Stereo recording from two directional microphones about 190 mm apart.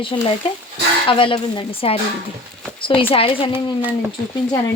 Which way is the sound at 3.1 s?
30° left (ahead or behind).